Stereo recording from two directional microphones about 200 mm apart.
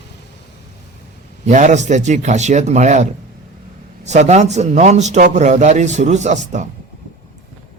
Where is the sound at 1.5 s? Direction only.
35° right (ahead or behind).